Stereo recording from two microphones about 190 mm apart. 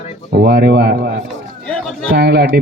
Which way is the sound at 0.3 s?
60° right (ahead or behind).